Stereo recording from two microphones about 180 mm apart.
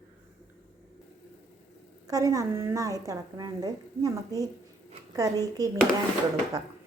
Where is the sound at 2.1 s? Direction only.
20° right (ahead or behind).